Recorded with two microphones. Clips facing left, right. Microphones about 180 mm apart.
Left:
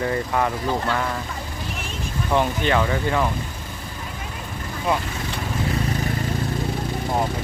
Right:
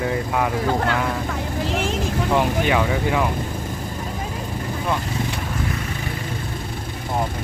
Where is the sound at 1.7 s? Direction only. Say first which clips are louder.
Right 10 dB; 90° right.